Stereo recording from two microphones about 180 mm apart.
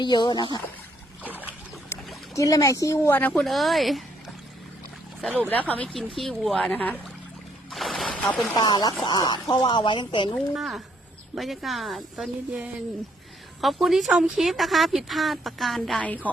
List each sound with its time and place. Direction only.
0.0 s speech: 25° left (ahead or behind)
1.2 s boat: 10° right (ahead or behind)
2.3 s speech: 20° left (ahead or behind); by 5.5 s 5° right (ahead or behind)
5.5 s a woman's voice: 10° left (ahead or behind)
7.7 s a sound: centre (ahead or behind)
8.5 s speech: 25° left (ahead or behind)
10.3 s a woman's voice: centre (ahead or behind)